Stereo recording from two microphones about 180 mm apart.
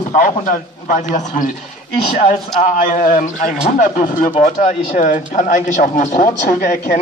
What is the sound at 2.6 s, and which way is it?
A man's voice, 45° left (ahead or behind).